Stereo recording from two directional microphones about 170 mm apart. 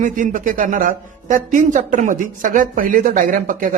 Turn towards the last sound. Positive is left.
turn(degrees=-55)  # may be behind; listen again after turning